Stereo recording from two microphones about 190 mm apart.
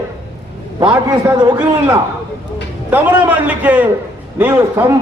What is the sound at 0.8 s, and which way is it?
A man's voice, 20° right (ahead or behind).